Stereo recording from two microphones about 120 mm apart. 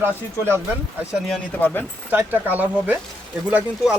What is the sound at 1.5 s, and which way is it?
Speech, 15° left (ahead or behind).